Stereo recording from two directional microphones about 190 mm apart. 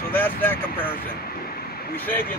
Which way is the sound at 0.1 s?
10° left (ahead or behind).